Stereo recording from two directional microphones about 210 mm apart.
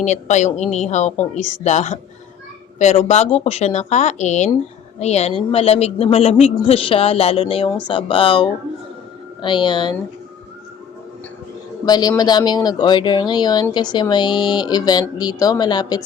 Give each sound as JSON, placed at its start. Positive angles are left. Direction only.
{"t": 0.0, "sound": "speech", "side_deg": 35}
{"t": 11.9, "sound": "speech", "side_deg": 20}